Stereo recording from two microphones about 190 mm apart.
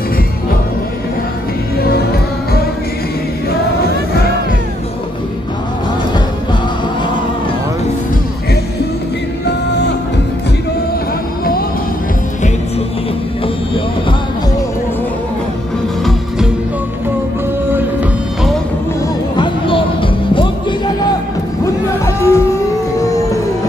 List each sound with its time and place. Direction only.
19.3 s music: 25° left (ahead or behind)
21.6 s music: 15° left (ahead or behind)